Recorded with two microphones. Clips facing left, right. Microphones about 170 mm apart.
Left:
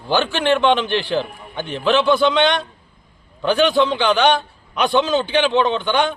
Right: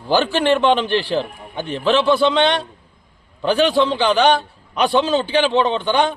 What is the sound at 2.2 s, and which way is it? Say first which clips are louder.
Speech: even; 35° right (ahead or behind).